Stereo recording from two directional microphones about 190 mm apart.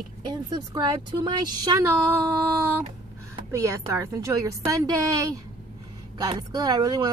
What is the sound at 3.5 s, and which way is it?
A woman's voice, 15° right (ahead or behind).